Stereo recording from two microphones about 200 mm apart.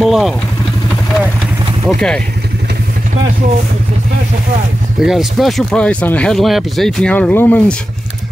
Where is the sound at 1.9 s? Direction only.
Centre (ahead or behind).